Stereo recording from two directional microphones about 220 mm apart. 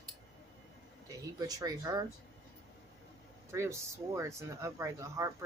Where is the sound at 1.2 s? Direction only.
15° right (ahead or behind).